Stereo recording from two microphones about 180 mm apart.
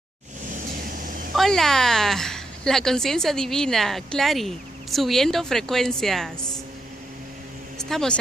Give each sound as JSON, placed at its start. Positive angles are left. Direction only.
{"t": 0.7, "sound": "fowl", "side_deg": -50}
{"t": 1.3, "sound": "a woman's voice", "side_deg": 0}
{"t": 7.8, "sound": "a woman's voice", "side_deg": 5}